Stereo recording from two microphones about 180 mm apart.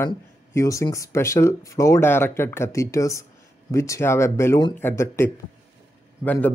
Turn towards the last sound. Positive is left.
turn(degrees=10)  # may be behind; listen again after turning